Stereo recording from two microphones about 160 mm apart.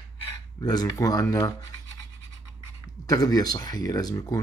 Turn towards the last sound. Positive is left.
turn(degrees=20)  # may be behind; listen again after turning